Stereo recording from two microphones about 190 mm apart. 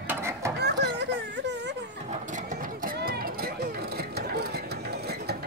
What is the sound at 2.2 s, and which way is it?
Vehicle, 40° right (ahead or behind).